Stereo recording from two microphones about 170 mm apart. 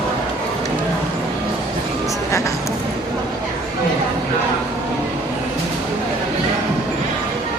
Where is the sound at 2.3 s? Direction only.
15° left (ahead or behind).